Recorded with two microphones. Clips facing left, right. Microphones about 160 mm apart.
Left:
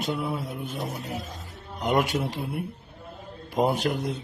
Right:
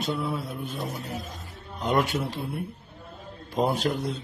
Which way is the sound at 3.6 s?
15° left (ahead or behind).